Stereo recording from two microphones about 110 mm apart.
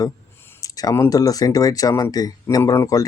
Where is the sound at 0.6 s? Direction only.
35° left (ahead or behind).